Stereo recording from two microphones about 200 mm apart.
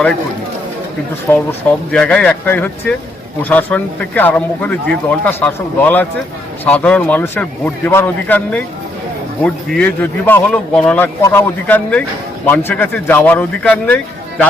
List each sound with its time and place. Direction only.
1.3 s a man's voice: 5° left (ahead or behind)